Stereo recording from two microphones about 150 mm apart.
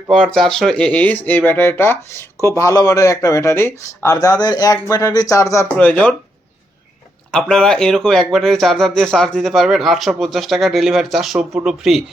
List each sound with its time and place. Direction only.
0.1 s speech: 5° left (ahead or behind)
7.3 s speech: 5° left (ahead or behind)